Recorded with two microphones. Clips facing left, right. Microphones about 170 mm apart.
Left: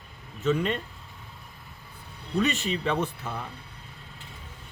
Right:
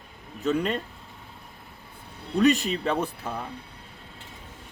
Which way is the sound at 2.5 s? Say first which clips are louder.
Right 5 dB; 40° right (ahead or behind).